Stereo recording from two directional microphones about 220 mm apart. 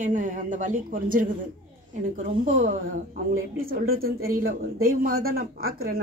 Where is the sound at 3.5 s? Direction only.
40° right (ahead or behind).